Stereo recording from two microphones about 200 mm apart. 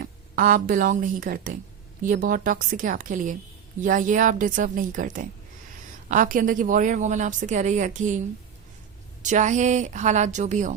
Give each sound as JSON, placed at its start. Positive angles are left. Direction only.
{"t": 0.0, "sound": "a woman's voice", "side_deg": -45}
{"t": 9.2, "sound": "a woman's voice", "side_deg": -40}